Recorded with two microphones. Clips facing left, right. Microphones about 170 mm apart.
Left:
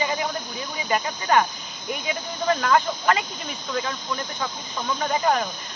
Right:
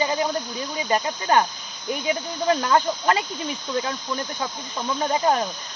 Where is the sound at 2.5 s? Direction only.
25° right (ahead or behind).